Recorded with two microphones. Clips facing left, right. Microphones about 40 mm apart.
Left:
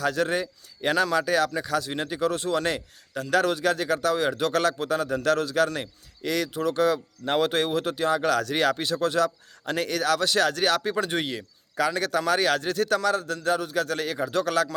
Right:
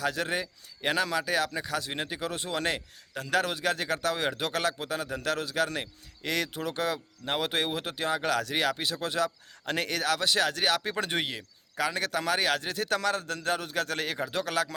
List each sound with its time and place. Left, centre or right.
0.0 s a man's voice: centre
6.2 s a man's voice: right
6.9 s speech: centre
7.5 s speech: centre
12.9 s a man's voice: right